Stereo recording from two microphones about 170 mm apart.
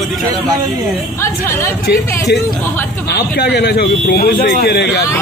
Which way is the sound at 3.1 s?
75° left (ahead or behind).